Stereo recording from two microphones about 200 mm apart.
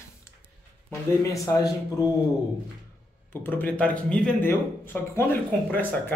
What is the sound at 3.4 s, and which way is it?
Speech, 10° left (ahead or behind).